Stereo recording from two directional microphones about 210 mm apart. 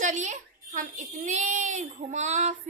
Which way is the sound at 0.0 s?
35° right (ahead or behind).